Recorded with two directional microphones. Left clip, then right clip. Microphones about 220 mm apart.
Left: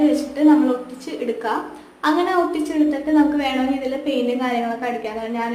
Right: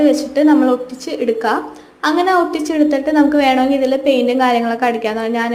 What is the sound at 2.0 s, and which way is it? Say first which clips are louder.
A woman's voice: right 5 dB; 30° right (ahead or behind).